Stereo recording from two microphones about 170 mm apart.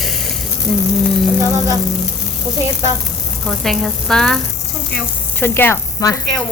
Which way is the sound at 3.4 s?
Centre (ahead or behind).